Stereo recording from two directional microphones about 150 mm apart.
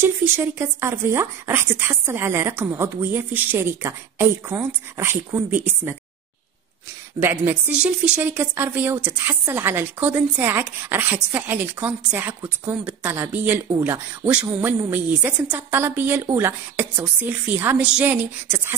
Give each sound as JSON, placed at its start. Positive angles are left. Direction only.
{"t": 0.0, "sound": "speech", "side_deg": -15}
{"t": 7.2, "sound": "speech", "side_deg": -15}